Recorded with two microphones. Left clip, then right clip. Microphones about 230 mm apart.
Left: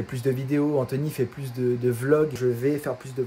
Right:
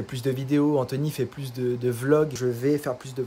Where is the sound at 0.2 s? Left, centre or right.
Centre.